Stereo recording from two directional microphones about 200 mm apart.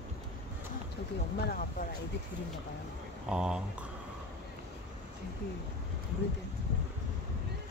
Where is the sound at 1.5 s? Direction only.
45° left (ahead or behind).